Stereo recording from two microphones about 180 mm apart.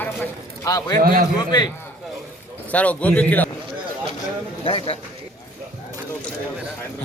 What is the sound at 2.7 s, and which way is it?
Speech, 10° left (ahead or behind).